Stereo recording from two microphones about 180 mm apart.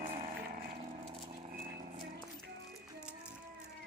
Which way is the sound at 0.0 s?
50° right (ahead or behind).